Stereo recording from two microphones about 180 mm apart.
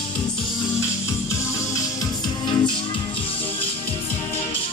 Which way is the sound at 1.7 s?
25° left (ahead or behind).